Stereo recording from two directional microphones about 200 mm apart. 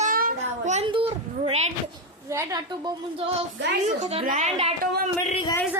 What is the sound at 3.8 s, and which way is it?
Speech, 30° right (ahead or behind).